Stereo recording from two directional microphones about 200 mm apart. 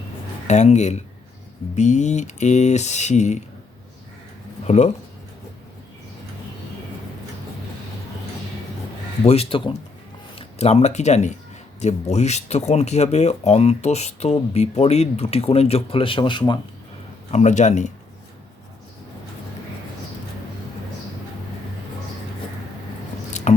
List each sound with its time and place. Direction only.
0.4 s speech: 35° left (ahead or behind)
4.6 s speech: 35° left (ahead or behind)
9.2 s speech: 30° left (ahead or behind)
17.3 s speech: 35° left (ahead or behind)
23.3 s scissors: 35° left (ahead or behind)